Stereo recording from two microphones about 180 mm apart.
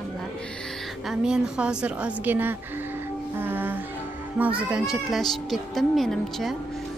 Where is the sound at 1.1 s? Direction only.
5° right (ahead or behind).